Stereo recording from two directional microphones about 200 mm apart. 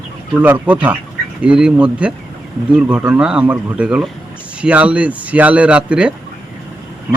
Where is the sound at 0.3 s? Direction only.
10° right (ahead or behind).